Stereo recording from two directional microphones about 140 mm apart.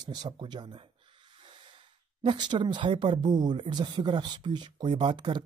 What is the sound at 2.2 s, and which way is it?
Speech, 35° right (ahead or behind).